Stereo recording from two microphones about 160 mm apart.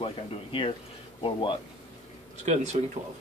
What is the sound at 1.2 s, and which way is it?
Speech, 30° left (ahead or behind).